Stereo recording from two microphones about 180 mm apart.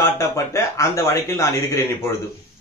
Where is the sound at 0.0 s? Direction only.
15° left (ahead or behind).